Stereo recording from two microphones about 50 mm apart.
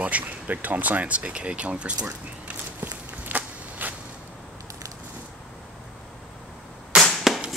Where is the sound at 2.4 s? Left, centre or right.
Right.